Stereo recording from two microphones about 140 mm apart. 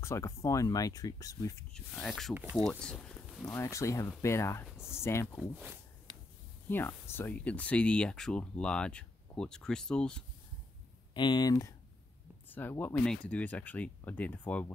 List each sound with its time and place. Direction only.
0.0 s speech: 20° left (ahead or behind)
1.7 s speech: 5° left (ahead or behind)
3.5 s speech: 20° left (ahead or behind)
4.6 s a sound: 5° right (ahead or behind)
4.9 s speech: 20° left (ahead or behind)
6.7 s speech: 15° left (ahead or behind)
11.1 s speech: 30° left (ahead or behind)
12.4 s speech: 15° left (ahead or behind)